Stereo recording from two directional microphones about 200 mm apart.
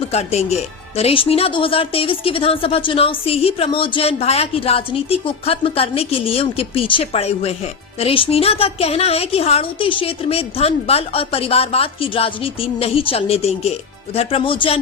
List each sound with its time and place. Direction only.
0.1 s speech: 30° left (ahead or behind)